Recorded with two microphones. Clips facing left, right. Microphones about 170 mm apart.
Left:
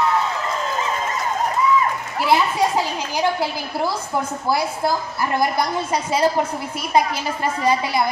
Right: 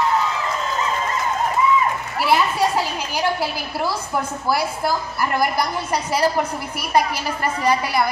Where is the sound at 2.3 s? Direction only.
20° left (ahead or behind).